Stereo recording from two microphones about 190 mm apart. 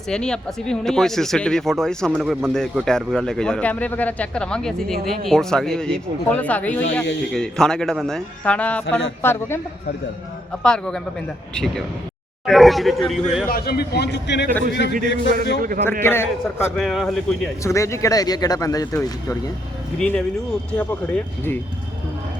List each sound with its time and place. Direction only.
0.1 s speech: 5° left (ahead or behind)
10.6 s speech: 5° left (ahead or behind)
13.5 s a man's voice: 55° left (ahead or behind); by 15.3 s 70° left (ahead or behind)
15.8 s speech: 10° left (ahead or behind)
16.7 s speech: centre (ahead or behind)
17.6 s speech: 15° left (ahead or behind)
20.0 s speech: 5° left (ahead or behind)